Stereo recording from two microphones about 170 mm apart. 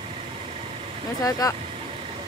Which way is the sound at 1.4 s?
20° left (ahead or behind).